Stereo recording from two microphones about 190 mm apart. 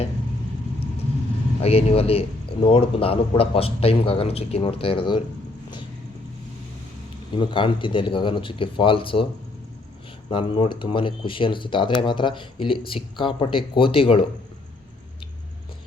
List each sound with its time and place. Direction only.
1.6 s a man's voice: 30° left (ahead or behind)
7.3 s a man's voice: 25° left (ahead or behind)
10.2 s a man's voice: 25° left (ahead or behind)